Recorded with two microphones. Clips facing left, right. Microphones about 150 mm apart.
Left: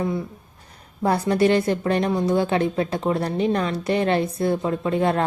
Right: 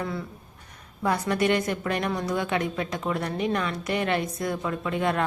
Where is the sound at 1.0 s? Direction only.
30° left (ahead or behind).